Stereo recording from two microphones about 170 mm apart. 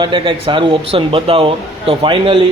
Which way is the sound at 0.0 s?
30° right (ahead or behind).